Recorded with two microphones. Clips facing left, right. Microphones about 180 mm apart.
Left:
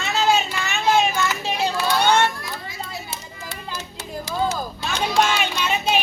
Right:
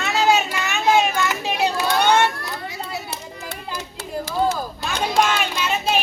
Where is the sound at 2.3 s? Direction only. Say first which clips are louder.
Right 2 dB; 70° right (ahead or behind).